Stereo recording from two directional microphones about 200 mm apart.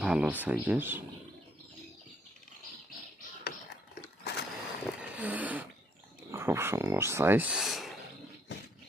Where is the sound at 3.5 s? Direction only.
50° left (ahead or behind).